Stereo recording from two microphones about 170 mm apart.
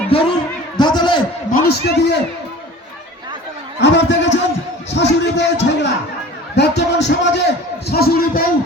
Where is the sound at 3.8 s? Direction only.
90° left.